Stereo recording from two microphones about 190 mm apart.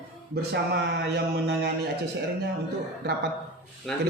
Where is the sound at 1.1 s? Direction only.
60° right (ahead or behind).